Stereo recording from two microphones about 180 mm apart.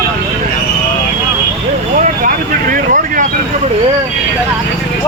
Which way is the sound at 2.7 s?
45° right (ahead or behind).